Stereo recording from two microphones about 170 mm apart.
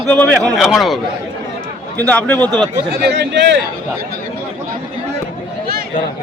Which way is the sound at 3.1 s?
85° right.